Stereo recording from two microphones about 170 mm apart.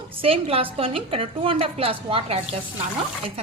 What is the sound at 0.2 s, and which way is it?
A woman's voice, 35° right (ahead or behind).